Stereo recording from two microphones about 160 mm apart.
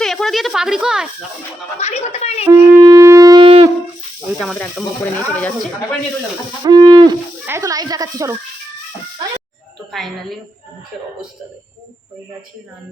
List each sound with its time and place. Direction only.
0.0 s a sound: centre (ahead or behind)
1.8 s speech: 40° left (ahead or behind)
2.4 s wind instrument: 15° right (ahead or behind)
3.4 s shofar: 35° right (ahead or behind)
5.1 s speech: 10° left (ahead or behind)
6.7 s speech: 25° right (ahead or behind)
9.9 s a woman's voice: centre (ahead or behind)